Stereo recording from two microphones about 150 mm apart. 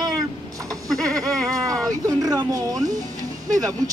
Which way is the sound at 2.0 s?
25° right (ahead or behind).